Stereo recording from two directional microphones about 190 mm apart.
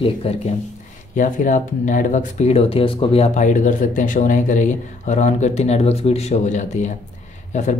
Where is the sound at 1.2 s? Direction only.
45° left (ahead or behind).